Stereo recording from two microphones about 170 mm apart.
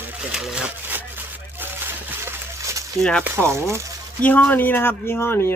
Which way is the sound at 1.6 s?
10° right (ahead or behind).